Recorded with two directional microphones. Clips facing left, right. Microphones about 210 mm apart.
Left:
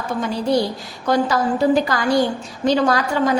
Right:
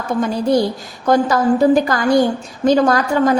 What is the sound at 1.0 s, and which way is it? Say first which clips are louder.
A woman's voice: right 4 dB; 50° right (ahead or behind).